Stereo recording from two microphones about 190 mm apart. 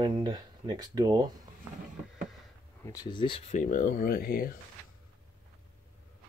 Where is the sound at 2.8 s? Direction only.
20° left (ahead or behind).